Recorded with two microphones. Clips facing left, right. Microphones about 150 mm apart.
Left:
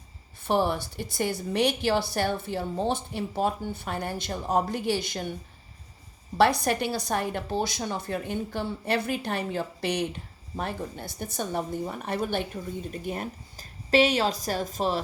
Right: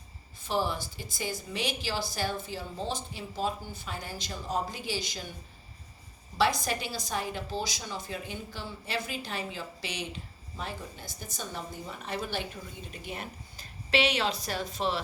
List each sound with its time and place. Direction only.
0.4 s a woman's voice: 60° left (ahead or behind)
6.3 s a woman's voice: 60° left (ahead or behind)
12.9 s speech: 45° left (ahead or behind)